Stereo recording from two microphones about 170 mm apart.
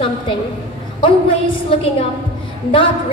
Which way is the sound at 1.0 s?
30° left (ahead or behind).